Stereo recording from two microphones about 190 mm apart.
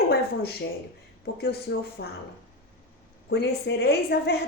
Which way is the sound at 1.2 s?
65° left (ahead or behind).